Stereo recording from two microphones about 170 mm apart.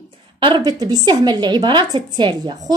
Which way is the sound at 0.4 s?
25° right (ahead or behind).